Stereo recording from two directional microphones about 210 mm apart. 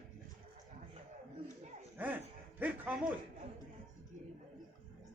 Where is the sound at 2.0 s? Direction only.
10° right (ahead or behind).